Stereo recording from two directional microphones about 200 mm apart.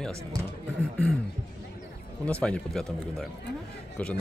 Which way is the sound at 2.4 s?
5° left (ahead or behind).